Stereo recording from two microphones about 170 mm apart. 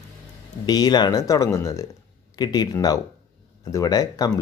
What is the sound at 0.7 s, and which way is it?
Speech, 25° left (ahead or behind).